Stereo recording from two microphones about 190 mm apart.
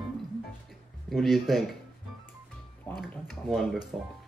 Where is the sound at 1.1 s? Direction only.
Centre (ahead or behind).